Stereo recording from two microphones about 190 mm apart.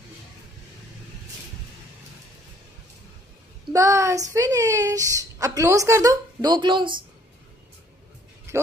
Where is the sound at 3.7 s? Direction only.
15° right (ahead or behind).